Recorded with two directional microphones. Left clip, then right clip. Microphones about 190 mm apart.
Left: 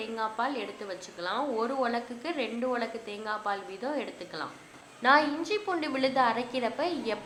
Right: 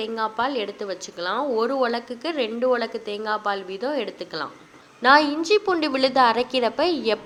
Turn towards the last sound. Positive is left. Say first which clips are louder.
# right 9 dB
turn(degrees=-35)  # may be behind; listen again after turning